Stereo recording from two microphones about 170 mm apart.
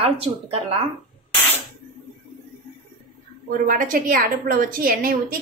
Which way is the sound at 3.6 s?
55° right (ahead or behind).